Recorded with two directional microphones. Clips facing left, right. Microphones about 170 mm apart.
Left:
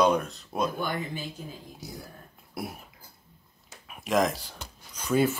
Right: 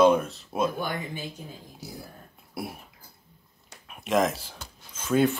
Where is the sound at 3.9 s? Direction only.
Centre (ahead or behind).